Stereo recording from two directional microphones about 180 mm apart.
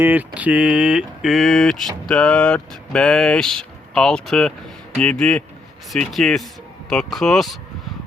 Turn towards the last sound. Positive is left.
turn(degrees=0)  # may be behind; listen again after turning